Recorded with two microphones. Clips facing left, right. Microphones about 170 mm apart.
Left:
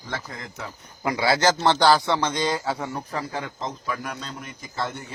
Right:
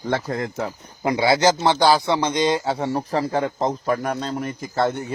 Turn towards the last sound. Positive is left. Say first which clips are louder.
# right 9 dB
turn(degrees=-60)  # may be behind; listen again after turning